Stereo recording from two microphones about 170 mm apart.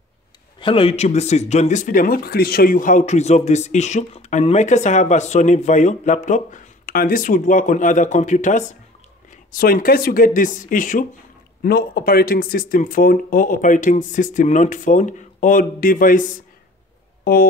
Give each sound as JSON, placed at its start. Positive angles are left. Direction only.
{"t": 0.6, "sound": "speech", "side_deg": 30}
{"t": 9.5, "sound": "speech", "side_deg": 55}
{"t": 11.6, "sound": "speech", "side_deg": 65}
{"t": 17.2, "sound": "a sound", "side_deg": 60}